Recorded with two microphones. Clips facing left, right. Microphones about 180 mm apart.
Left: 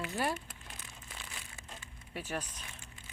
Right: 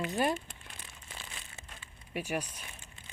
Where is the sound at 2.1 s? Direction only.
15° right (ahead or behind).